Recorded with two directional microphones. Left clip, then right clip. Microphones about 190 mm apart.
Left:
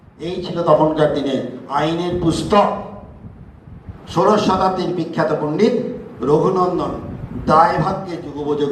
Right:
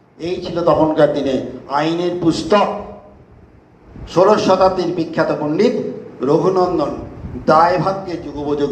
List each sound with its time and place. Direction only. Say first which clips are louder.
0.2 s a man's voice: right 2 dB; 65° left (ahead or behind)
4.1 s a man's voice: right 3 dB; 65° left (ahead or behind)